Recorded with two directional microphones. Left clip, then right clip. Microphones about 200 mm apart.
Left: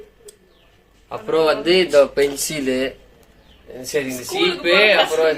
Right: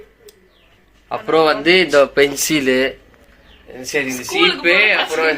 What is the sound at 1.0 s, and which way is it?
A man's voice, 25° right (ahead or behind).